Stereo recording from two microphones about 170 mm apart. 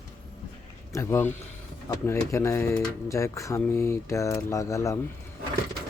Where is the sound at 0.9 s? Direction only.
15° left (ahead or behind).